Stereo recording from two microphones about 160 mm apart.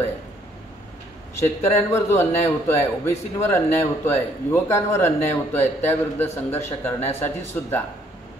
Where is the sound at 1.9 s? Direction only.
15° left (ahead or behind).